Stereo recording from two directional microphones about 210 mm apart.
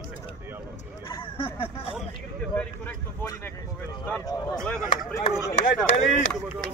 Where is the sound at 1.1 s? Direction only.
25° left (ahead or behind).